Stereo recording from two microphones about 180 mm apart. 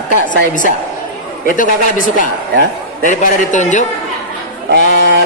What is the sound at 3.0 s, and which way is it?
A man's voice, 45° left (ahead or behind).